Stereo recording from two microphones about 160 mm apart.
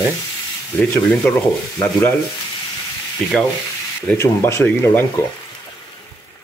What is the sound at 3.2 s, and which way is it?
Sanding, 5° left (ahead or behind).